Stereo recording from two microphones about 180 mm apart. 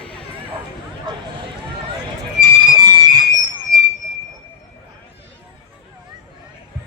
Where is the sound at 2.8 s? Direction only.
25° right (ahead or behind).